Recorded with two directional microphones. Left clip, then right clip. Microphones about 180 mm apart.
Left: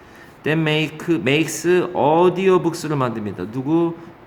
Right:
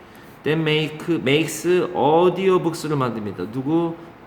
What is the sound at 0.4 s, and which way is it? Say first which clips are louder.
Speech: left 1 dB; 25° left (ahead or behind).